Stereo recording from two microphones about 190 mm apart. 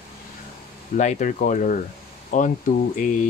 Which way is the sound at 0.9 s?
40° left (ahead or behind).